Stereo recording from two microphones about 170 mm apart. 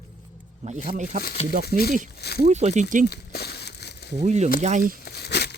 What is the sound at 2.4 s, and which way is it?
Speech, 40° right (ahead or behind).